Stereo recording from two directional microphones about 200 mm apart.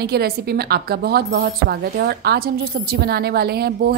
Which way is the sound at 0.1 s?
50° right (ahead or behind).